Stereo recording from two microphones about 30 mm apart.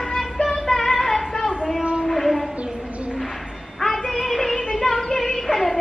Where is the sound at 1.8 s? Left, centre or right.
Right.